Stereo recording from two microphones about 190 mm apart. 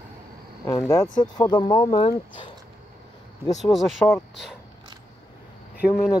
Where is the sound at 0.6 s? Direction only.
15° left (ahead or behind).